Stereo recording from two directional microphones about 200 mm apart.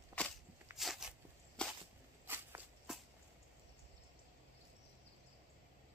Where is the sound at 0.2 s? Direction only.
5° left (ahead or behind).